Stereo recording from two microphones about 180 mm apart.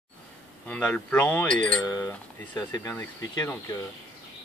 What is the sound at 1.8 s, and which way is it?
Speech, 20° left (ahead or behind).